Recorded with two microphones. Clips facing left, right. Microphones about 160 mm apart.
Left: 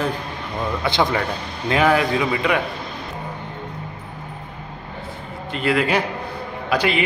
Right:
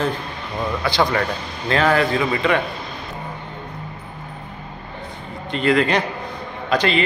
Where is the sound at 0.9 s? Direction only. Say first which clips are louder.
Right 1 dB; 20° left (ahead or behind).